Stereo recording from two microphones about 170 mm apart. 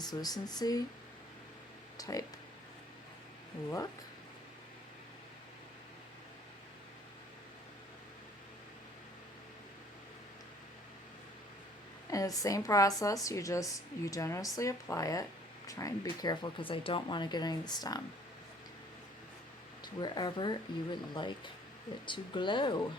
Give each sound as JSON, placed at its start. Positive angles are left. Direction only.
{"t": 0.0, "sound": "speech", "side_deg": 25}
{"t": 2.0, "sound": "speech", "side_deg": 20}
{"t": 12.1, "sound": "speech", "side_deg": 20}
{"t": 19.8, "sound": "speech", "side_deg": 25}